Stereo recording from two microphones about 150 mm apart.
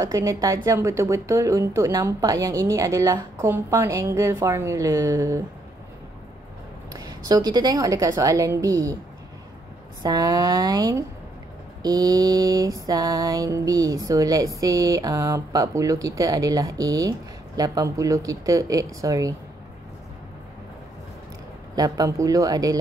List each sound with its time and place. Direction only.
0.0 s a woman's voice: 25° right (ahead or behind)
6.9 s a woman's voice: 25° right (ahead or behind)
10.0 s a woman's voice: 25° right (ahead or behind)
21.7 s a woman's voice: 25° right (ahead or behind)